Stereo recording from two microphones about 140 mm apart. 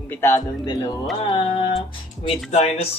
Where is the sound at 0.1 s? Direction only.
15° left (ahead or behind).